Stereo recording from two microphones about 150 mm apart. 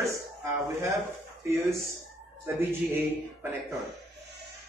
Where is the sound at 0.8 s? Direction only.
20° right (ahead or behind).